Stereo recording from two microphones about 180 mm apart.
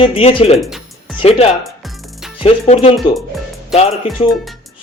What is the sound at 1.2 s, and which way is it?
Speech, 35° left (ahead or behind).